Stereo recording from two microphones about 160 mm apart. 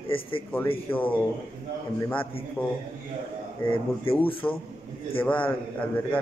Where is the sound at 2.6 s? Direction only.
10° left (ahead or behind).